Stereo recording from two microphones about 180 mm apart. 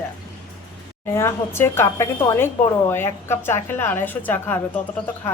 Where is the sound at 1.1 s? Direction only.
15° left (ahead or behind).